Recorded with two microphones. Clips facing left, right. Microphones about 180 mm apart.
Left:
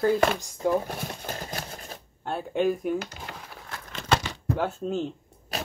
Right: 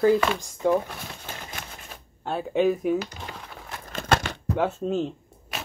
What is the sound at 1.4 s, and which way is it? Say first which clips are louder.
Typewriter: left 4 dB; 35° left (ahead or behind).